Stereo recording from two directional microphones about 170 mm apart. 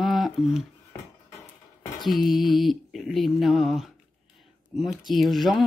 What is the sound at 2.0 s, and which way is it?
Speech, centre (ahead or behind).